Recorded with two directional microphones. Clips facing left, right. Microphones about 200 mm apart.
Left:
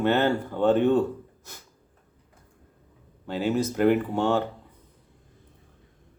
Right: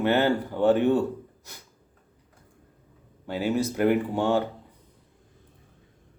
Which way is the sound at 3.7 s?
10° right (ahead or behind).